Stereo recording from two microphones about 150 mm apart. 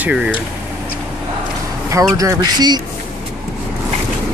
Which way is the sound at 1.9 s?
20° right (ahead or behind).